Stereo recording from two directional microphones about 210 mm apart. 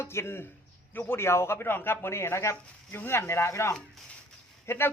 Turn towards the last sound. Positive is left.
turn(degrees=10)  # may be behind; listen again after turning